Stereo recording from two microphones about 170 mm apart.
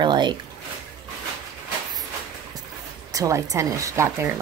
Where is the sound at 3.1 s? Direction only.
20° right (ahead or behind).